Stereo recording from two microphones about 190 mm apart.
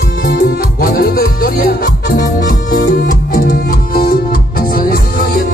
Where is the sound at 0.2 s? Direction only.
55° left (ahead or behind).